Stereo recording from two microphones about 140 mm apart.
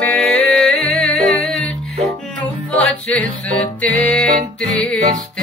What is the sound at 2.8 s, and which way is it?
Music, 10° left (ahead or behind).